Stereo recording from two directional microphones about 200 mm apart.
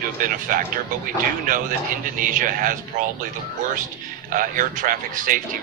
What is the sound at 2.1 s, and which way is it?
Speech, 40° right (ahead or behind).